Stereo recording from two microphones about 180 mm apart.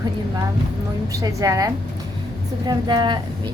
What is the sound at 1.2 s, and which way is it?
A woman's voice, 20° right (ahead or behind).